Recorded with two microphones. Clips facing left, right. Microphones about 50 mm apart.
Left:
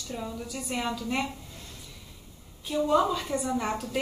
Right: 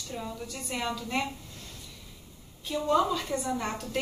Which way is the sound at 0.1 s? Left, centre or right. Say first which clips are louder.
Left 2 dB; centre.